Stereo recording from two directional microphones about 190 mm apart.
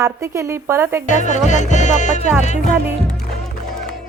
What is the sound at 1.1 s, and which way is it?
Music, 40° left (ahead or behind).